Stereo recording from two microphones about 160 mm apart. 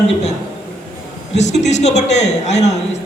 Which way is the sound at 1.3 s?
45° left (ahead or behind).